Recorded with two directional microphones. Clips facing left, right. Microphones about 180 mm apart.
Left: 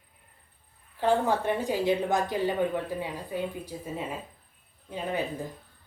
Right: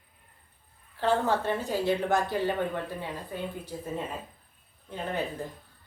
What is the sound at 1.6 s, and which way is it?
A woman's voice, 15° left (ahead or behind).